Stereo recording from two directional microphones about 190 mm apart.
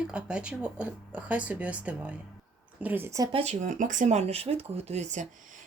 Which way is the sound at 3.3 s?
35° right (ahead or behind).